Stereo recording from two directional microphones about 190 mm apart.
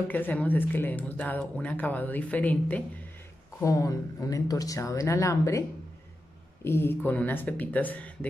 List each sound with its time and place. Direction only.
0.1 s speech: 10° left (ahead or behind)